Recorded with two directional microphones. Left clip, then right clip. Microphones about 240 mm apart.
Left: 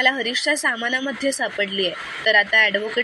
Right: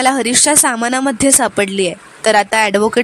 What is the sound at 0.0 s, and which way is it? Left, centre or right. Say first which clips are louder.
Speech: right 6 dB; right.